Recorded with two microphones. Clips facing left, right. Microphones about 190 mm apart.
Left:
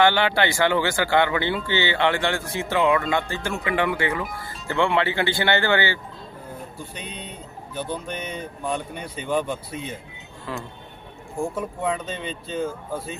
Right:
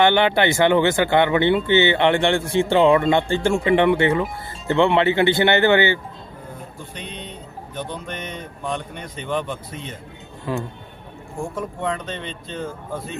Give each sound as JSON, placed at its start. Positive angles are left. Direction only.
{"t": 0.0, "sound": "speech", "side_deg": -20}
{"t": 7.8, "sound": "speech", "side_deg": 10}
{"t": 11.5, "sound": "speech", "side_deg": 5}